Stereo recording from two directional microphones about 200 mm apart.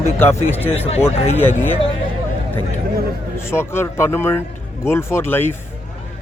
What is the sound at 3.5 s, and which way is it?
A man's voice, 10° left (ahead or behind).